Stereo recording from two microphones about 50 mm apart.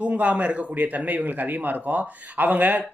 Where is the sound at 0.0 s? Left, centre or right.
Right.